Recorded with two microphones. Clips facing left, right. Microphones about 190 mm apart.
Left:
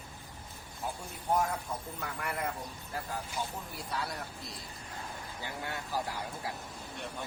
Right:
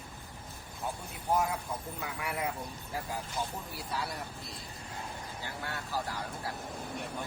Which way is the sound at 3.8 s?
5° right (ahead or behind).